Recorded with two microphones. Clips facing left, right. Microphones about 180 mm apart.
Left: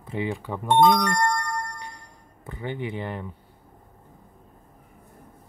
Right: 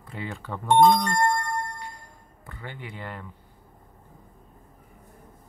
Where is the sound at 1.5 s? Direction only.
25° right (ahead or behind).